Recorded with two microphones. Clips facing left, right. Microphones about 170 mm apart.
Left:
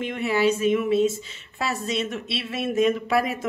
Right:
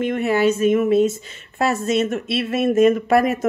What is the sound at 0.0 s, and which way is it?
Speech, 50° right (ahead or behind).